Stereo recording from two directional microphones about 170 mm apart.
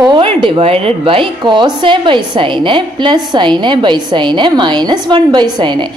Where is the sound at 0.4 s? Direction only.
30° right (ahead or behind).